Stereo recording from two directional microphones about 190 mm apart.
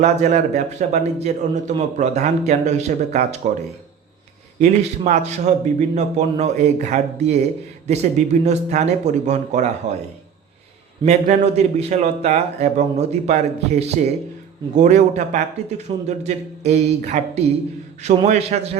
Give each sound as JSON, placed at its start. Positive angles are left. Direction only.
{"t": 0.0, "sound": "a man's voice", "side_deg": -40}
{"t": 4.6, "sound": "a man's voice", "side_deg": -35}
{"t": 11.0, "sound": "a man's voice", "side_deg": -35}